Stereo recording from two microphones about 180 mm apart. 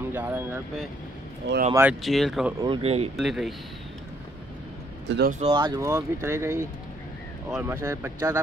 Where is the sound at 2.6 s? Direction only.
30° right (ahead or behind).